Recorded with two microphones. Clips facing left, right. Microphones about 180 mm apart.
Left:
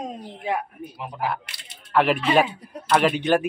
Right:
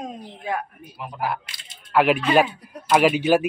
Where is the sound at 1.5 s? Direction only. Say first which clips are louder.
Even; 65° left (ahead or behind).